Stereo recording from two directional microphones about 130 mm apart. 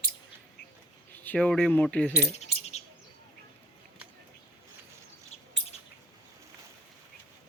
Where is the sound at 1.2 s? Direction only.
10° left (ahead or behind).